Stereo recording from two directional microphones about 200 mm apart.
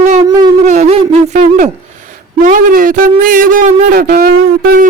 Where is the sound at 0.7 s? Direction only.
35° right (ahead or behind); by 4.8 s 50° right (ahead or behind).